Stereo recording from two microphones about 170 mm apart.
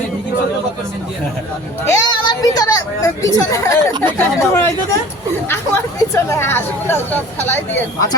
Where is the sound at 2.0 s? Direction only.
25° left (ahead or behind).